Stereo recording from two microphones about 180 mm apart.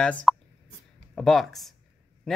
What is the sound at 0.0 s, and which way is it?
Speech, 5° left (ahead or behind).